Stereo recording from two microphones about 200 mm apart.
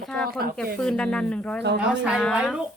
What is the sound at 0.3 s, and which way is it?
Speech, 50° right (ahead or behind).